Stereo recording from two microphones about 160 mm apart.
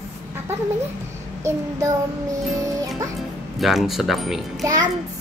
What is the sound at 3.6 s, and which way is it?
Speech, centre (ahead or behind).